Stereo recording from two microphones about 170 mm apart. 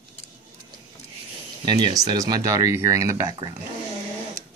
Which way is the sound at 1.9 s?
20° right (ahead or behind).